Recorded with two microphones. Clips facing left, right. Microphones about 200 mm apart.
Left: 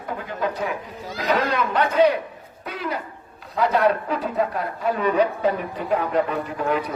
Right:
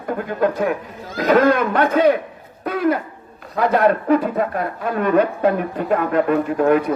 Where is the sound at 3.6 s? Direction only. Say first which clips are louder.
Right 3 dB; 50° right (ahead or behind).